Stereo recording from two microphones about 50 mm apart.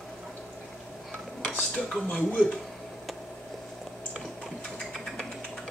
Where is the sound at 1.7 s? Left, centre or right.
Centre.